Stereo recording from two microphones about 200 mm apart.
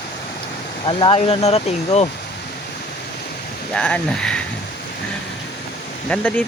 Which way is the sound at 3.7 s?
5° left (ahead or behind).